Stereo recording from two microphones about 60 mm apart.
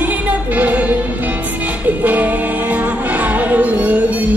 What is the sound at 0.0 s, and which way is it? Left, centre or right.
Music, right.